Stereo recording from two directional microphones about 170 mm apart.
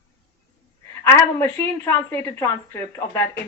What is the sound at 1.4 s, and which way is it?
Speech, 15° left (ahead or behind).